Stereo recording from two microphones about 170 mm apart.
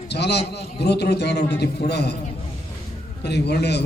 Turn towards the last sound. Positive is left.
turn(degrees=75)  # may be behind; listen again after turning